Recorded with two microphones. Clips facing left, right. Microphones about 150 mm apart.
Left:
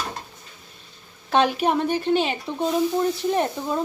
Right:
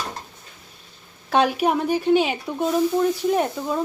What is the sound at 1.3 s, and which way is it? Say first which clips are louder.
Speech: right 1 dB; 5° right (ahead or behind).